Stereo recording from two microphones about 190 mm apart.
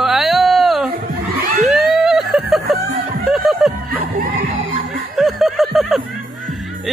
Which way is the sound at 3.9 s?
50° right (ahead or behind).